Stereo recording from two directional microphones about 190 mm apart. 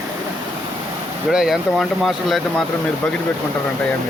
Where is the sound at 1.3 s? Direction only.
5° right (ahead or behind).